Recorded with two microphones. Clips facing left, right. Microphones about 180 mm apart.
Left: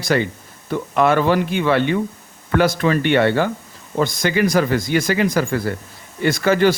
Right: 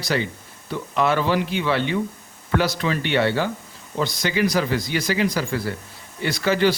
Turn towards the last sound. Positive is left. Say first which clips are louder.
# left 4 dB
turn(degrees=50)  # may be behind; listen again after turning